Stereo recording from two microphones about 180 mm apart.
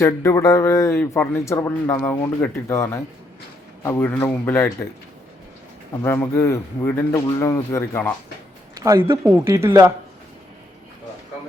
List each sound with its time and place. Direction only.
0.0 s speech: 15° left (ahead or behind)
6.0 s speech: 15° left (ahead or behind)
8.8 s speech: 15° right (ahead or behind)